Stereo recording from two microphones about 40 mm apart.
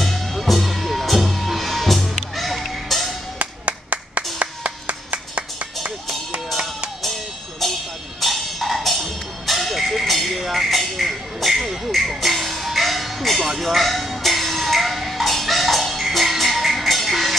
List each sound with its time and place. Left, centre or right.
0.0 s music: centre
3.3 s clapping: right
7.6 s music: centre